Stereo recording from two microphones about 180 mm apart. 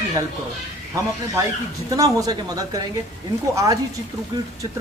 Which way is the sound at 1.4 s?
20° right (ahead or behind).